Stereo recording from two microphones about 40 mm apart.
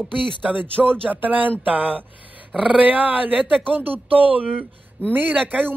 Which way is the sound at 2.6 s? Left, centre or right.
Right.